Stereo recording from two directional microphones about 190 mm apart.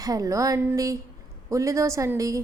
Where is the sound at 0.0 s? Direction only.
20° right (ahead or behind).